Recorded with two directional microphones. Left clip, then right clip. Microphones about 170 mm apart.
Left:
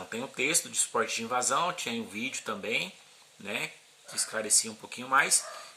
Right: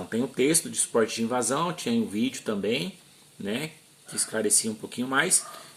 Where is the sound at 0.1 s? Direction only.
50° left (ahead or behind).